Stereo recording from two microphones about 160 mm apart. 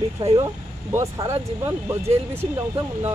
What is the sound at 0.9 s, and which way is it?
Speech, 20° right (ahead or behind).